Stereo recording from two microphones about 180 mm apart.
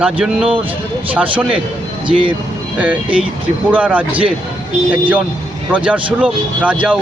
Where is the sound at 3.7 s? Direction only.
10° right (ahead or behind).